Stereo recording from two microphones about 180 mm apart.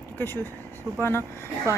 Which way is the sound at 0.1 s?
10° left (ahead or behind).